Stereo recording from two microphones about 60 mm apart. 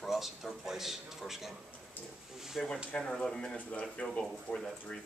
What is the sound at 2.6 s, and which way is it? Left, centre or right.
Speech, centre.